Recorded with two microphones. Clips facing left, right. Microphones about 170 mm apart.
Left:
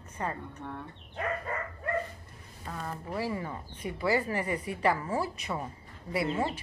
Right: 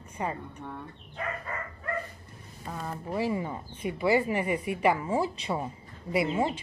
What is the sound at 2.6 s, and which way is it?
Speech, 10° right (ahead or behind).